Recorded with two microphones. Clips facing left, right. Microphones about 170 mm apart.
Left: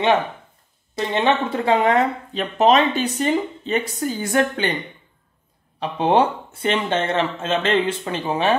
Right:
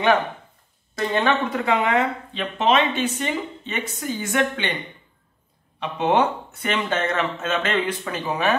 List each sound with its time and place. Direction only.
0.9 s speech: 25° left (ahead or behind)
5.8 s speech: 30° left (ahead or behind)